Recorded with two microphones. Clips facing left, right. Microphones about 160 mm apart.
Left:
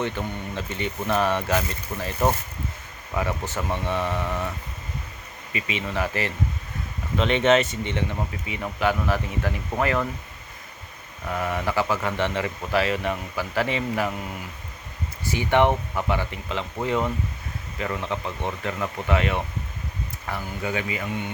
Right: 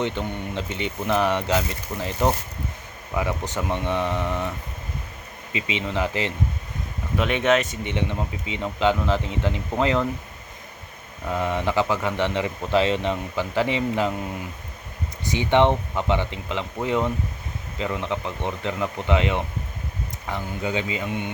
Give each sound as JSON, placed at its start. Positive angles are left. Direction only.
{"t": 0.0, "sound": "speech", "side_deg": -20}
{"t": 3.2, "sound": "speech", "side_deg": -15}
{"t": 5.5, "sound": "speech", "side_deg": -20}
{"t": 7.9, "sound": "speech", "side_deg": -15}
{"t": 11.3, "sound": "speech", "side_deg": -20}
{"t": 15.2, "sound": "speech", "side_deg": -20}
{"t": 17.7, "sound": "speech", "side_deg": -15}